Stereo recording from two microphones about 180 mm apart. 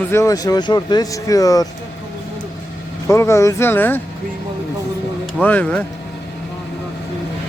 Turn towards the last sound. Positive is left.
turn(degrees=10)  # may be behind; listen again after turning